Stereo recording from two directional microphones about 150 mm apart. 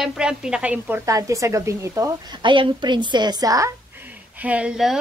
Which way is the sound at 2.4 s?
30° right (ahead or behind).